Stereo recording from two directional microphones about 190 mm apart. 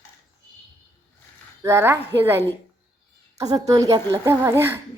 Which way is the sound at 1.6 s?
15° right (ahead or behind).